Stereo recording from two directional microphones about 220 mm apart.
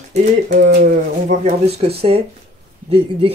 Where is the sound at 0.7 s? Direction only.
45° right (ahead or behind).